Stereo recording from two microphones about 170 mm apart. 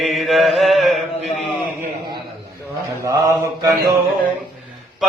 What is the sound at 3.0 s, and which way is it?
Mantra, 20° right (ahead or behind).